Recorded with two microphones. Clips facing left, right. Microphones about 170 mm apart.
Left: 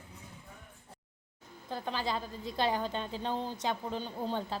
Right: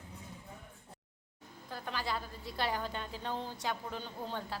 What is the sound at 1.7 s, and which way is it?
A woman's voice, 20° left (ahead or behind).